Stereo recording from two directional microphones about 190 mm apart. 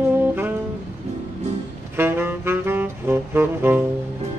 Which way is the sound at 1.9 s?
10° right (ahead or behind).